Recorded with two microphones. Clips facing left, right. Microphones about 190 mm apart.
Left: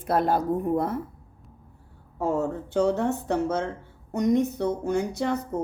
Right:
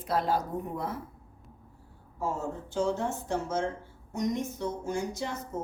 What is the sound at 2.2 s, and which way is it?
Speech, 60° left (ahead or behind).